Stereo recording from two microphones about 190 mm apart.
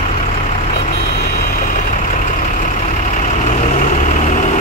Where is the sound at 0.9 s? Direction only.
60° left (ahead or behind).